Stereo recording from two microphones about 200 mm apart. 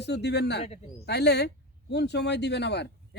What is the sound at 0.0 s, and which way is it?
Speech, 60° left (ahead or behind).